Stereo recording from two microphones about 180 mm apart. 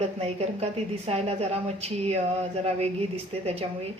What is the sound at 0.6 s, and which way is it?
Speech, 35° right (ahead or behind).